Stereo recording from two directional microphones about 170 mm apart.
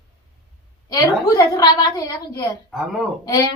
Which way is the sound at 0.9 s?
20° left (ahead or behind).